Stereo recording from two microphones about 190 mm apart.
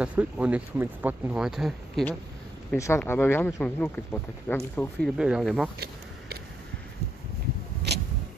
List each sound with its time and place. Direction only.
0.0 s speech: 5° right (ahead or behind)
2.8 s speech: 10° left (ahead or behind)
7.9 s vehicle: 60° right (ahead or behind)